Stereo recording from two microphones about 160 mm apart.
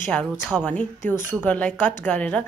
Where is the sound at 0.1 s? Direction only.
10° left (ahead or behind).